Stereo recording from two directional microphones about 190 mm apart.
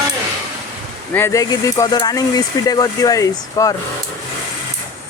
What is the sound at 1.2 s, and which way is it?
Speech, 15° left (ahead or behind).